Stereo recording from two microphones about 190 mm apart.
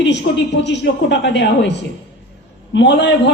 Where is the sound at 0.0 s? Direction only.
65° left (ahead or behind).